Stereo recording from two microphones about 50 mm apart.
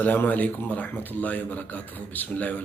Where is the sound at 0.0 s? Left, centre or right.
Left.